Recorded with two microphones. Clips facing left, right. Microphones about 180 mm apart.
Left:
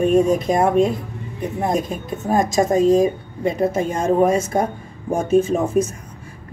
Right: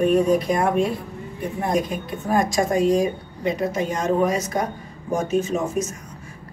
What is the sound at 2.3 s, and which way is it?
Speech, 25° left (ahead or behind).